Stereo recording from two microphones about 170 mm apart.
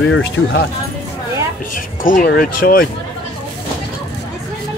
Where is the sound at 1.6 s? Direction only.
55° left (ahead or behind).